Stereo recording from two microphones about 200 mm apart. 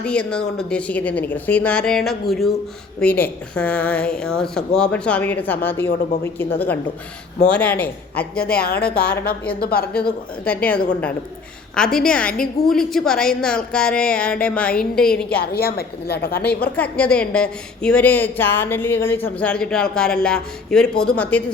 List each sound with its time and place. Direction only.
0.0 s a woman's voice: 5° left (ahead or behind)
7.5 s speech: 5° left (ahead or behind)
8.5 s a woman's voice: 50° left (ahead or behind)
10.4 s a woman's voice: 5° left (ahead or behind)
15.4 s a woman's voice: 50° left (ahead or behind)
16.7 s a woman's voice: 5° left (ahead or behind)